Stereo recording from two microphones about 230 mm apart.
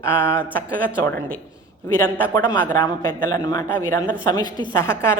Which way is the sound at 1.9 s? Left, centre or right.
Centre.